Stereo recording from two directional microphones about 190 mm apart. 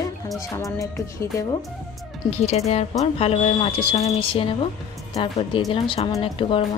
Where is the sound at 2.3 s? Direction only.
35° left (ahead or behind).